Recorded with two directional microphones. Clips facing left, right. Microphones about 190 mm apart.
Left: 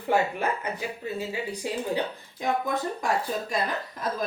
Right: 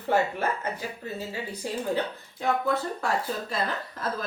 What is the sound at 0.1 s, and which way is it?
Speech, 15° left (ahead or behind).